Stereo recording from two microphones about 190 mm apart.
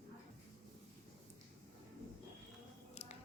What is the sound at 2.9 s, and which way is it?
Music, 35° left (ahead or behind).